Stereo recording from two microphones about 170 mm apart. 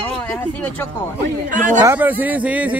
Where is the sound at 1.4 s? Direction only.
50° right (ahead or behind).